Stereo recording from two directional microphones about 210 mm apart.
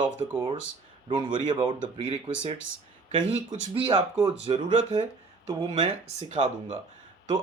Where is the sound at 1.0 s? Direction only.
20° right (ahead or behind).